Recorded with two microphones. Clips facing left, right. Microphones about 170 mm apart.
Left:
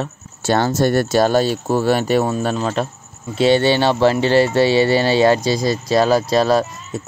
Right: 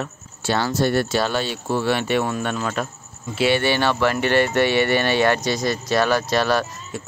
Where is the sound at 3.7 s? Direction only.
15° left (ahead or behind).